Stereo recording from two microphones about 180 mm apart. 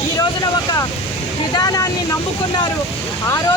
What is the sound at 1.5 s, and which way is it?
Speech, 20° left (ahead or behind).